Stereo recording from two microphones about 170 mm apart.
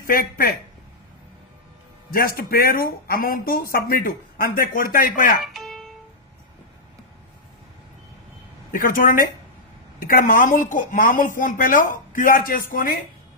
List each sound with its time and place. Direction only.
0.1 s speech: 60° left (ahead or behind)
2.0 s speech: 60° left (ahead or behind)
5.4 s music: centre (ahead or behind)
8.7 s speech: 55° left (ahead or behind)